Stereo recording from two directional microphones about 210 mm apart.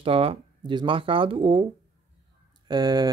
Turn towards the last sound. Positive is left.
turn(degrees=-20)  # may be behind; listen again after turning